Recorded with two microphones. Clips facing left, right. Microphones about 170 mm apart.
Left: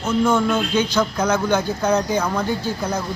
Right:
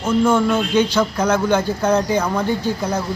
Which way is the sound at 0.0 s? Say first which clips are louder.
Right 2 dB; 10° right (ahead or behind).